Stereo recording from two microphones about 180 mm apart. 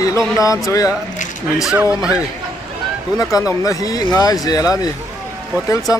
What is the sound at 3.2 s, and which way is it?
Speech, 20° left (ahead or behind).